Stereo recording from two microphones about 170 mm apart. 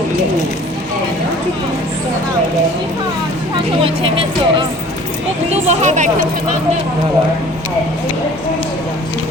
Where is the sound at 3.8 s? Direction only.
30° right (ahead or behind).